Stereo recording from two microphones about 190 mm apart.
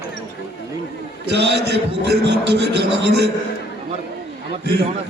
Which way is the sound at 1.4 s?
60° right (ahead or behind).